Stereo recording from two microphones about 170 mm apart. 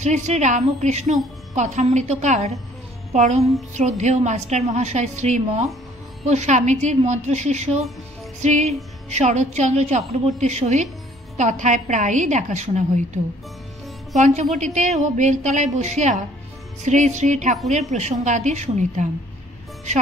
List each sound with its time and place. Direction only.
0.0 s a woman's voice: 45° right (ahead or behind)
14.1 s speech: 40° right (ahead or behind)